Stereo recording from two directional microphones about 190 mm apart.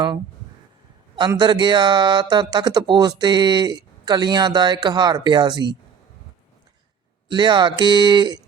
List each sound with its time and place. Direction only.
1.3 s speech: 25° right (ahead or behind)
7.3 s speech: 25° right (ahead or behind)